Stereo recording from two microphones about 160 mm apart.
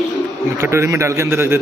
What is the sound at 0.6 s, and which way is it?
A man's voice, 20° right (ahead or behind).